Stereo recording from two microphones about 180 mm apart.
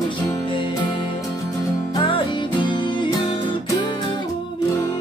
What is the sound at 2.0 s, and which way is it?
Music, 30° left (ahead or behind).